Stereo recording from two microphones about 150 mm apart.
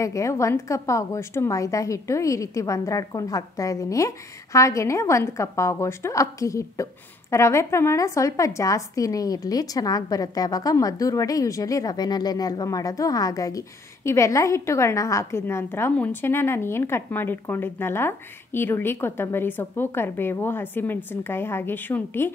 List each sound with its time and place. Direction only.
0.0 s a woman's voice: 20° left (ahead or behind)